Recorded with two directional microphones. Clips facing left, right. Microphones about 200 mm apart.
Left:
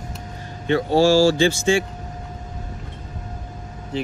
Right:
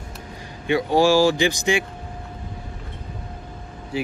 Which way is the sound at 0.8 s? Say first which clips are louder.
Left 1 dB; 15° right (ahead or behind).